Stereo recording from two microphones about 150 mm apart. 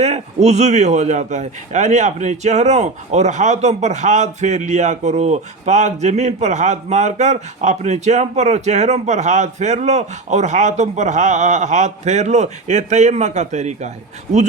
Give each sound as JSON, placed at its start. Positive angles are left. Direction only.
{"t": 0.0, "sound": "speech", "side_deg": -50}